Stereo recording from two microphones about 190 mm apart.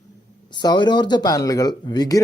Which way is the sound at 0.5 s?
20° left (ahead or behind).